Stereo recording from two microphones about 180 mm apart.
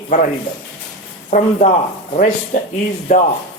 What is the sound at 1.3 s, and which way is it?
Speech, 40° left (ahead or behind).